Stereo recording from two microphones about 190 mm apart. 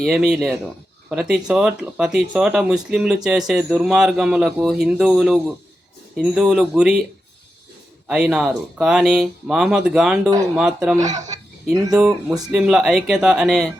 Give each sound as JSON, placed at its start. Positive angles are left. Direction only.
{"t": 0.0, "sound": "speech", "side_deg": 0}
{"t": 8.0, "sound": "speech", "side_deg": -5}
{"t": 11.0, "sound": "speech", "side_deg": -40}
{"t": 11.9, "sound": "speech", "side_deg": -5}